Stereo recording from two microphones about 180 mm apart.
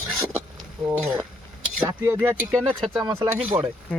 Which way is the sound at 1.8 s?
10° right (ahead or behind).